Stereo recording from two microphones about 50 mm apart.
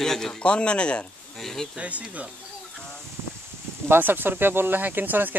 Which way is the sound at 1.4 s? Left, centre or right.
Centre.